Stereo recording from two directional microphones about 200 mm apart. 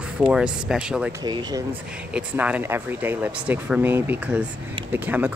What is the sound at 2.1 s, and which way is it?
Speech, 5° right (ahead or behind).